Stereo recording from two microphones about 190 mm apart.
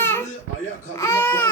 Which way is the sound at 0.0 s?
10° left (ahead or behind).